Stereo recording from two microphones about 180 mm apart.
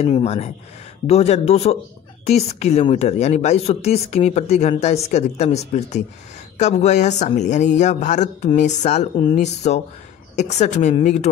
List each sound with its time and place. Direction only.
0.0 s a woman's voice: 35° left (ahead or behind)